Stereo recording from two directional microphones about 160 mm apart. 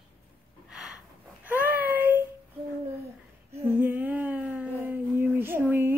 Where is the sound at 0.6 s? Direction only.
5° right (ahead or behind).